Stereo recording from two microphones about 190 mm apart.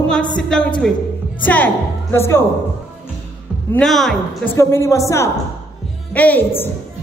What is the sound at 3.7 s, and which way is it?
Speech, centre (ahead or behind).